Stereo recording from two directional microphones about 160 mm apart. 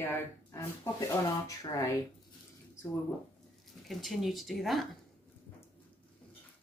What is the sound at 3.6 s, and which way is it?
Speech, centre (ahead or behind).